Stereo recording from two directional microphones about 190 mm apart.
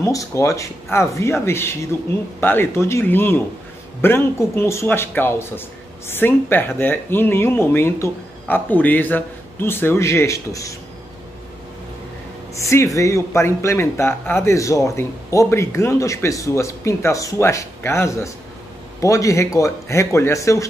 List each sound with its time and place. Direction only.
0.0 s speech: 15° left (ahead or behind)
12.6 s speech: 15° left (ahead or behind)